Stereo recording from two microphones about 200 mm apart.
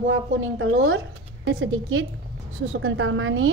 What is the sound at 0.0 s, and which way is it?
A woman's voice, 70° right (ahead or behind).